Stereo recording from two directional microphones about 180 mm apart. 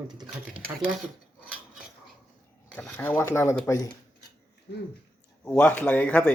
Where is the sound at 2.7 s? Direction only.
5° left (ahead or behind).